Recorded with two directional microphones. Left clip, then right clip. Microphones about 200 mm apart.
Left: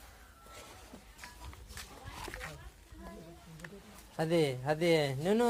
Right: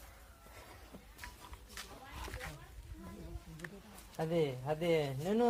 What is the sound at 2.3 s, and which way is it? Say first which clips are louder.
Wild animals: left 3 dB; 25° right (ahead or behind).